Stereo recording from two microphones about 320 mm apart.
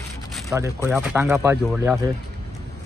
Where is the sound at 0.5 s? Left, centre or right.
Centre.